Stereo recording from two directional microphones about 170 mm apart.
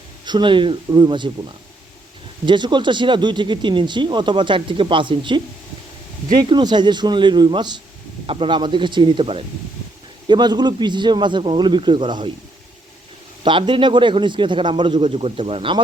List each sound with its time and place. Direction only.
0.3 s speech: 25° right (ahead or behind)
2.5 s speech: 25° right (ahead or behind)
6.4 s speech: 25° right (ahead or behind)
13.4 s speech: 30° right (ahead or behind)